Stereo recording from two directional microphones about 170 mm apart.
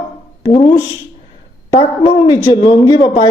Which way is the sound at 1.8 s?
30° left (ahead or behind).